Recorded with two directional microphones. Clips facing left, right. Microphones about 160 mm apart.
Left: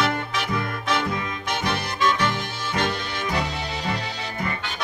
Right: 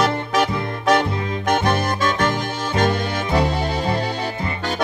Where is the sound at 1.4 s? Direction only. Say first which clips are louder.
Right 9 dB; 50° right (ahead or behind).